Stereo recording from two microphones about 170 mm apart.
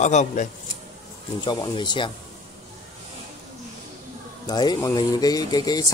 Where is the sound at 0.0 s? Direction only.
45° left (ahead or behind).